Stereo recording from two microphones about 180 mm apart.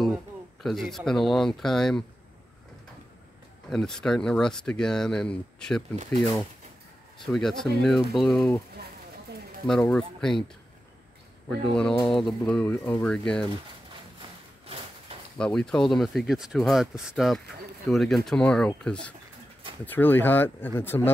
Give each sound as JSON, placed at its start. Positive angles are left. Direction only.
{"t": 0.0, "sound": "speech", "side_deg": 0}
{"t": 3.7, "sound": "speech", "side_deg": 5}
{"t": 7.3, "sound": "speech", "side_deg": 0}
{"t": 8.4, "sound": "speech", "side_deg": 15}
{"t": 9.7, "sound": "speech", "side_deg": 5}
{"t": 11.4, "sound": "speech", "side_deg": 5}
{"t": 11.9, "sound": "speech", "side_deg": 30}
{"t": 12.2, "sound": "speech", "side_deg": 5}
{"t": 15.3, "sound": "speech", "side_deg": 5}